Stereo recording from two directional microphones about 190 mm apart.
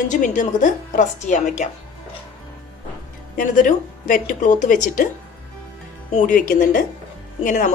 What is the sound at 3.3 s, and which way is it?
A woman's voice, 45° left (ahead or behind).